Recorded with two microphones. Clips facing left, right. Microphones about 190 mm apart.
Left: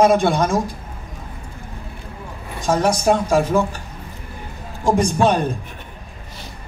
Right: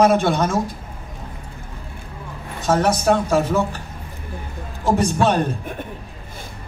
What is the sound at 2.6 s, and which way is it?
Speech, 10° left (ahead or behind).